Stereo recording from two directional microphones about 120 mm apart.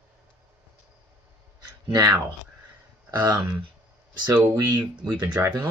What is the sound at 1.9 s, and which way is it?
Speech, 30° right (ahead or behind).